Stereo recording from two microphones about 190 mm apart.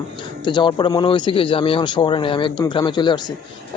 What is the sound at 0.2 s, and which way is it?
Speech, 25° left (ahead or behind).